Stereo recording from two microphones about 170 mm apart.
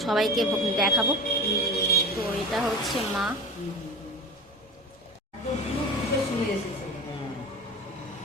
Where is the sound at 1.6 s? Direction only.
65° left (ahead or behind).